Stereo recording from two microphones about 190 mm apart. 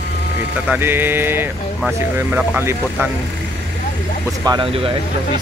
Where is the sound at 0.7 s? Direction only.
10° right (ahead or behind).